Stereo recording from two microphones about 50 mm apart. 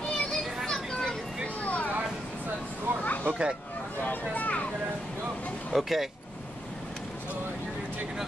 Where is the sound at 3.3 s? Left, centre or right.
Centre.